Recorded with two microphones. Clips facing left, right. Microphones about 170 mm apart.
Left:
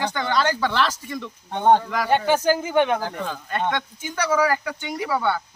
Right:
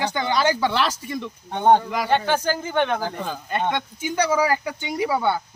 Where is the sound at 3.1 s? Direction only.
10° right (ahead or behind).